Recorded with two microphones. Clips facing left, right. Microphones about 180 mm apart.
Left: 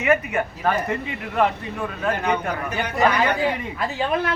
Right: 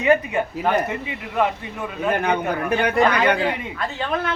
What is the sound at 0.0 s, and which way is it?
Speech, 30° right (ahead or behind).